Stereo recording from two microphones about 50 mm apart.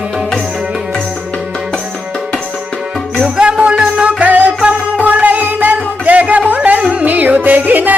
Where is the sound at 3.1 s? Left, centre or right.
Centre.